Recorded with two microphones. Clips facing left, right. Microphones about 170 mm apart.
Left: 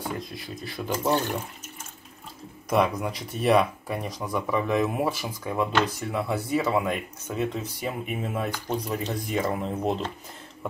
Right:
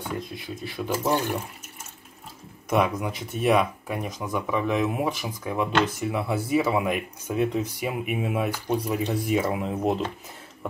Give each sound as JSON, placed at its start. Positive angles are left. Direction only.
{"t": 0.7, "sound": "speech", "side_deg": -5}
{"t": 2.7, "sound": "speech", "side_deg": -5}